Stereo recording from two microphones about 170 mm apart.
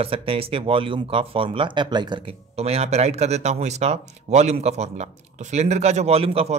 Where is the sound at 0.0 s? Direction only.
35° right (ahead or behind).